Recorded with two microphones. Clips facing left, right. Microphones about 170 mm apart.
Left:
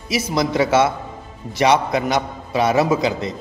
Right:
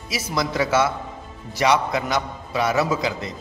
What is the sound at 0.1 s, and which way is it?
A man's voice, 20° left (ahead or behind).